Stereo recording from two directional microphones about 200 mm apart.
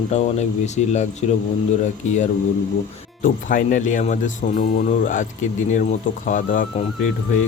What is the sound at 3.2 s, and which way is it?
Speech, 45° left (ahead or behind).